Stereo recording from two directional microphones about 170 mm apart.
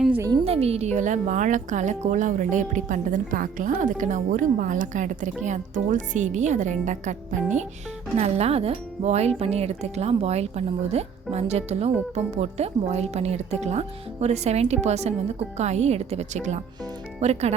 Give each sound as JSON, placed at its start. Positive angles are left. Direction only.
{"t": 0.4, "sound": "a woman's voice", "side_deg": -35}